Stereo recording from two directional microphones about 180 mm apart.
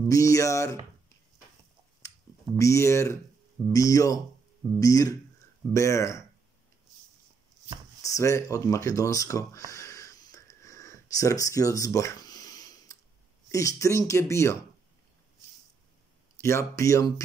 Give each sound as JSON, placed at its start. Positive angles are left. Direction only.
{"t": 0.0, "sound": "speech", "side_deg": 15}
{"t": 2.5, "sound": "speech", "side_deg": 15}
{"t": 8.0, "sound": "speech", "side_deg": 20}
{"t": 9.7, "sound": "a sound", "side_deg": 15}
{"t": 13.5, "sound": "speech", "side_deg": 20}
{"t": 16.3, "sound": "speech", "side_deg": 15}